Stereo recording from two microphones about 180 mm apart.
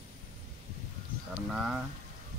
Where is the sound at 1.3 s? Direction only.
5° right (ahead or behind).